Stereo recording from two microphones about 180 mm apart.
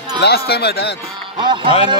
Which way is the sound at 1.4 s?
25° right (ahead or behind).